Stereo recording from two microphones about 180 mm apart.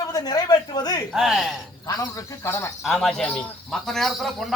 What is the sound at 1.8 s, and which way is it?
Speech, 20° left (ahead or behind).